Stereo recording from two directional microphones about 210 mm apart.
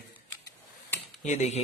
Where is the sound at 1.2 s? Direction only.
35° left (ahead or behind).